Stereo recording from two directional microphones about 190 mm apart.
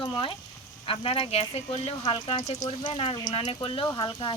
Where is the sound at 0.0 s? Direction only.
25° left (ahead or behind).